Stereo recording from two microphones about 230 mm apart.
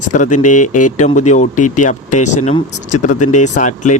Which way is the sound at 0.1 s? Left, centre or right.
Left.